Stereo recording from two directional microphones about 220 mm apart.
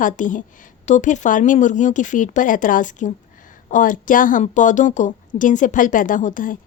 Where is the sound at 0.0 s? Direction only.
35° left (ahead or behind).